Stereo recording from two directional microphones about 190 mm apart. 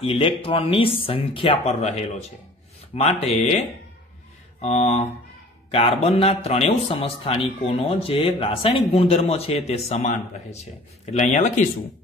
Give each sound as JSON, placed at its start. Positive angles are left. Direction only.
{"t": 0.0, "sound": "speech", "side_deg": 30}